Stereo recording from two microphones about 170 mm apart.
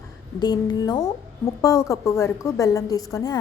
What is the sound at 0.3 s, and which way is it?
A woman's voice, 25° left (ahead or behind).